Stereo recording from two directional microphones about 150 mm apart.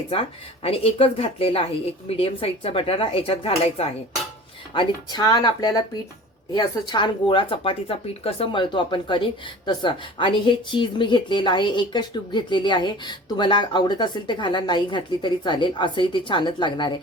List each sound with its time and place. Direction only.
0.1 s speech: 40° left (ahead or behind)